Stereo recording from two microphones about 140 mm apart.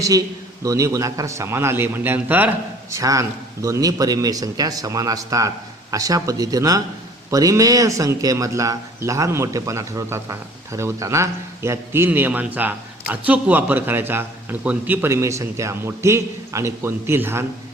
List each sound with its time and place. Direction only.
0.0 s a man's voice: 25° right (ahead or behind)
2.9 s a man's voice: 25° right (ahead or behind)